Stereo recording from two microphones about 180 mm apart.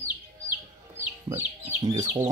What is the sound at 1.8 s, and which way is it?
Speech, 20° right (ahead or behind).